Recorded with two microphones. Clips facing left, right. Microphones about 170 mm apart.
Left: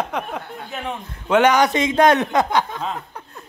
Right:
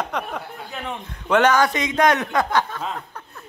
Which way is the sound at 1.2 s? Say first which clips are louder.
Left 2 dB; 10° left (ahead or behind).